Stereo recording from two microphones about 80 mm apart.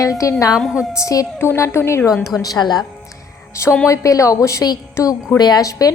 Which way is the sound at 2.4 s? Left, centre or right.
Left.